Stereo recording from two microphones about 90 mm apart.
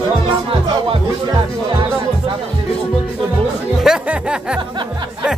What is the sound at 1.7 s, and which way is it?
Speech, 70° right (ahead or behind).